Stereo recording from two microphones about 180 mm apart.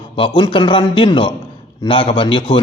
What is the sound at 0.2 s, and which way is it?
A man's voice, 25° left (ahead or behind).